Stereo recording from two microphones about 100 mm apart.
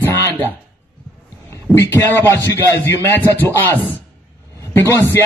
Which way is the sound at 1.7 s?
25° left (ahead or behind).